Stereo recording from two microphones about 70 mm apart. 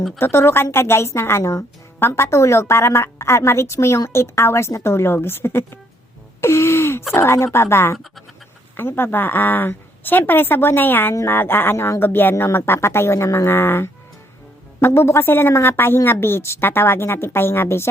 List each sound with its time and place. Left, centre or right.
0.2 s speech: left
6.4 s gasp: left
7.1 s a woman's voice: left